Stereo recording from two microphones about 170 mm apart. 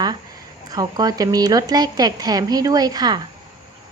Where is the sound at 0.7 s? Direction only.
20° right (ahead or behind).